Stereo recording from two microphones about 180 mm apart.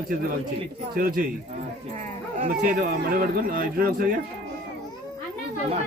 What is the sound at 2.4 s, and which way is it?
Speech, 55° right (ahead or behind).